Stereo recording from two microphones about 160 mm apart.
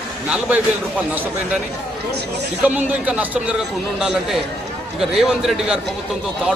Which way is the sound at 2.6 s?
10° right (ahead or behind).